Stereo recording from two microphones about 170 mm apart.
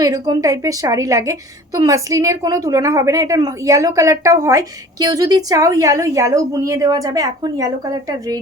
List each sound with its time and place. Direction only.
0.0 s a woman's voice: 20° right (ahead or behind)